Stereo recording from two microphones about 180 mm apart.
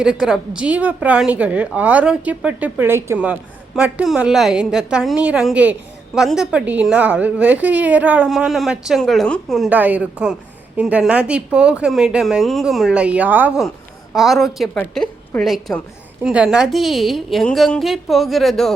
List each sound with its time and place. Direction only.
0.0 s a woman's voice: 5° right (ahead or behind)